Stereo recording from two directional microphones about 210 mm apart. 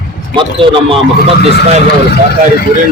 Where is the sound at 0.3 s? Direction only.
25° right (ahead or behind).